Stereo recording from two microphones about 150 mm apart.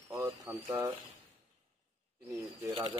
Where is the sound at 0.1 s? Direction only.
20° right (ahead or behind).